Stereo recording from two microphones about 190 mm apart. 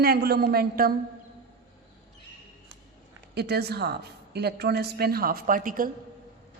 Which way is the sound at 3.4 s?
60° right (ahead or behind).